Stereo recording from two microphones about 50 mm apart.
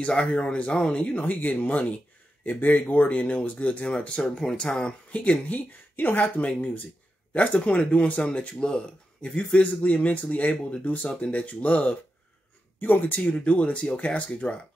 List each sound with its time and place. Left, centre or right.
0.0 s speech: left
5.5 s speech: left
13.2 s speech: left